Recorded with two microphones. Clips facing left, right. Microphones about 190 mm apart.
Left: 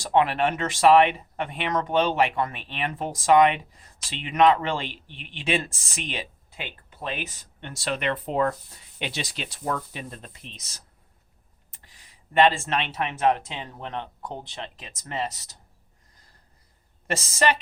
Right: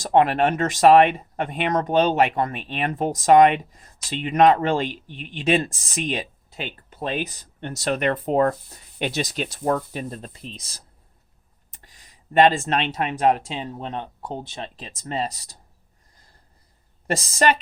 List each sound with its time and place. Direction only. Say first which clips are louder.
0.0 s speech: right 4 dB; 45° right (ahead or behind)
17.1 s speech: right 3 dB; 35° right (ahead or behind)